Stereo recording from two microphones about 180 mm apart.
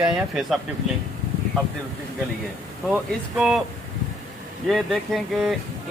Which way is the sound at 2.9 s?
Centre (ahead or behind).